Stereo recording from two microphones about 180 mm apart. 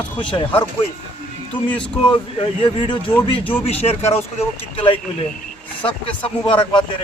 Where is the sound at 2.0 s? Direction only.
25° left (ahead or behind).